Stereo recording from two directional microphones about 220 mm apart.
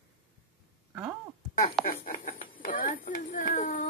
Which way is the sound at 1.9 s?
40° left (ahead or behind).